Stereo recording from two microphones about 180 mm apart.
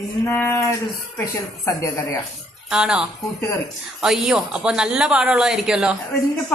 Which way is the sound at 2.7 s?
5° right (ahead or behind).